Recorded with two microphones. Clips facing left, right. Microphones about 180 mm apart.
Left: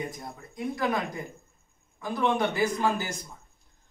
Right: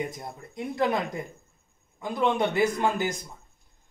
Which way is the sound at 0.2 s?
25° right (ahead or behind).